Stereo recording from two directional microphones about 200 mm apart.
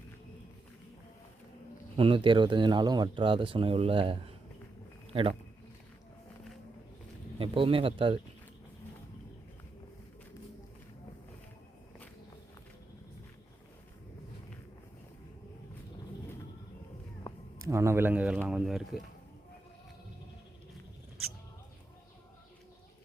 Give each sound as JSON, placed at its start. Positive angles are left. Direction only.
{"t": 2.0, "sound": "speech", "side_deg": -25}
{"t": 7.3, "sound": "speech", "side_deg": -25}
{"t": 17.7, "sound": "speech", "side_deg": -15}